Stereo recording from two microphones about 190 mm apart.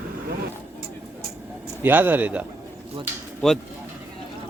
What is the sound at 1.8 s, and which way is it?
Speech, 10° right (ahead or behind).